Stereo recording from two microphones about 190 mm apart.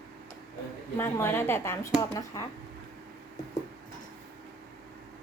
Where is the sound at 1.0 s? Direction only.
10° left (ahead or behind).